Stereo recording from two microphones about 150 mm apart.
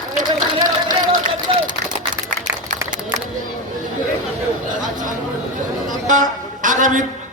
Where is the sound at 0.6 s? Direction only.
60° right (ahead or behind).